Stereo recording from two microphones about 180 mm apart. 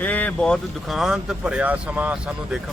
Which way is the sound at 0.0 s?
10° left (ahead or behind).